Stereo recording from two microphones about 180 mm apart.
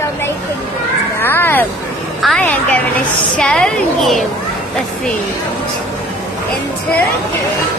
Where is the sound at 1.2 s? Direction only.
10° left (ahead or behind).